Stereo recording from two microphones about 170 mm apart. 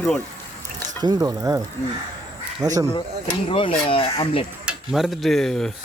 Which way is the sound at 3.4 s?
30° left (ahead or behind).